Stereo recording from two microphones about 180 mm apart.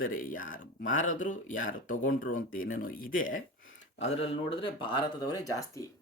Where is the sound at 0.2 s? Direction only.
50° left (ahead or behind).